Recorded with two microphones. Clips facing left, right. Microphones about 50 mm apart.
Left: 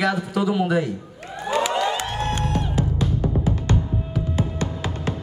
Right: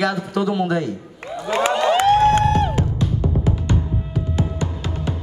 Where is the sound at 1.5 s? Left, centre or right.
Right.